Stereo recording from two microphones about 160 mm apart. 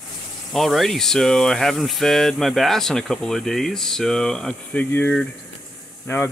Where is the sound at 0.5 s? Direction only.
Centre (ahead or behind).